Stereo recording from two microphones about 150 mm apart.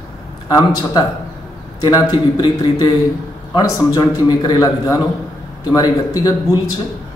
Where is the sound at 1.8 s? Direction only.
30° left (ahead or behind).